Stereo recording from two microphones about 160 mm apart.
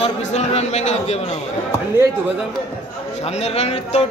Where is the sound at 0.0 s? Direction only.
45° left (ahead or behind).